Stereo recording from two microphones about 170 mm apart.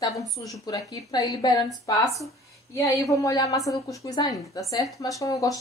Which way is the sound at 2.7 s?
20° left (ahead or behind).